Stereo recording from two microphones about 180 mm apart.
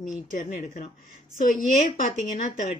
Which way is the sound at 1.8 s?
40° left (ahead or behind).